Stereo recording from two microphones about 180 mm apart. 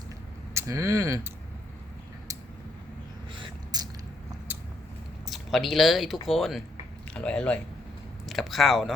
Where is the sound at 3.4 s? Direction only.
20° right (ahead or behind).